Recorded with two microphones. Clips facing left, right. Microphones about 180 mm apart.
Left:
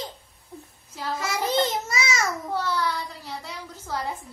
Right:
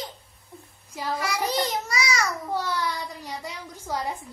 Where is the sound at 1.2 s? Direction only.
25° left (ahead or behind).